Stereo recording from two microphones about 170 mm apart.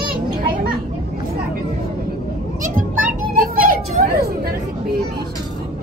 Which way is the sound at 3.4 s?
55° right (ahead or behind).